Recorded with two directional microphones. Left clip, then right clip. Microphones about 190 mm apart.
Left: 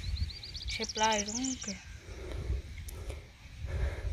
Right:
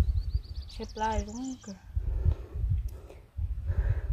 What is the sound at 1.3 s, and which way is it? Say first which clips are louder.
Speech: left 3 dB; 20° left (ahead or behind).